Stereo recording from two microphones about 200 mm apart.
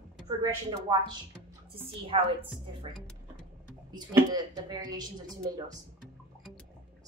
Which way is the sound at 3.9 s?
20° right (ahead or behind).